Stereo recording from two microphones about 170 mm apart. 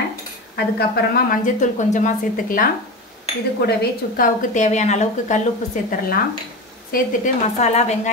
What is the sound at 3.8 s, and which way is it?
A woman's voice, 50° left (ahead or behind).